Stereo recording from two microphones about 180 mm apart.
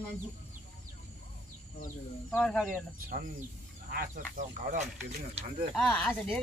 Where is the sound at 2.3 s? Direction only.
5° left (ahead or behind).